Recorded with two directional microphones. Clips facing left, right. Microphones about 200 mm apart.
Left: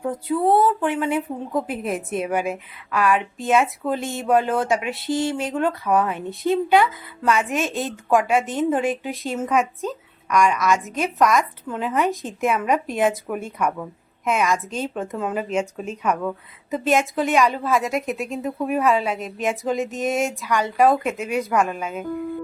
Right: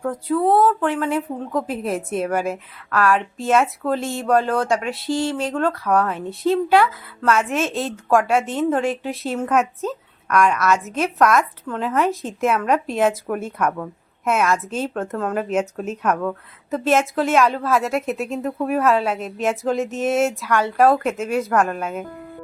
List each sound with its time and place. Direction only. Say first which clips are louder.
0.3 s a woman's voice: right 1 dB; centre (ahead or behind)
5.1 s speech: even; 20° left (ahead or behind)
5.4 s a woman's voice: right 1 dB; 5° left (ahead or behind)
15.0 s a woman's voice: right 2 dB; 10° left (ahead or behind)